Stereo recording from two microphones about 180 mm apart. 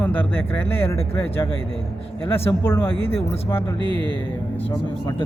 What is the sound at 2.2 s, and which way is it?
Speech, 10° left (ahead or behind).